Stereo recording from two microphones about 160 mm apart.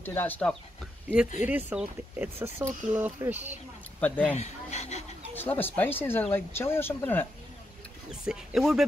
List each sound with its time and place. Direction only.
0.0 s speech: 10° left (ahead or behind)
1.0 s speech: 5° right (ahead or behind)
4.0 s speech: 10° left (ahead or behind)
4.4 s speech: 45° left (ahead or behind)
5.3 s speech: 10° left (ahead or behind)
8.1 s speech: 5° right (ahead or behind)